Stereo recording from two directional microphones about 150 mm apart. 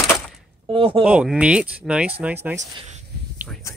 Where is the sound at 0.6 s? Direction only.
35° right (ahead or behind).